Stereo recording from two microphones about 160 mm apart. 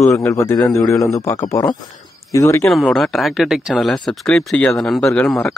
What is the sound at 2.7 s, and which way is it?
Speech, centre (ahead or behind).